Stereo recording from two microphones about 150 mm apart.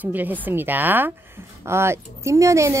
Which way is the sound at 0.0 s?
10° right (ahead or behind).